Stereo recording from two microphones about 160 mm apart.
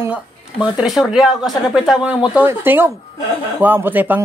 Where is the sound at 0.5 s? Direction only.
30° left (ahead or behind).